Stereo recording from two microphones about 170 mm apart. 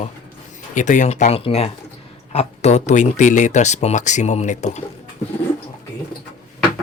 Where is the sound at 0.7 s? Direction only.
45° left (ahead or behind).